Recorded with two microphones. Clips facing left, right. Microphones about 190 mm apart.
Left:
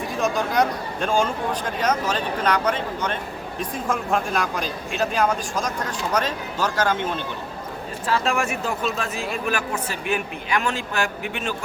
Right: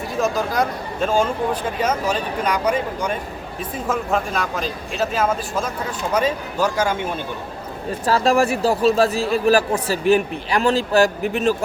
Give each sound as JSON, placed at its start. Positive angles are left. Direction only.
{"t": 0.2, "sound": "speech", "side_deg": 0}
{"t": 8.0, "sound": "speech", "side_deg": -40}